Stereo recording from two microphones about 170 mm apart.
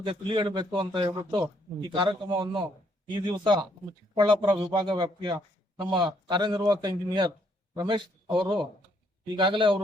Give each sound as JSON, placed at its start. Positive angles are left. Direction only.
{"t": 0.0, "sound": "a man's voice", "side_deg": -30}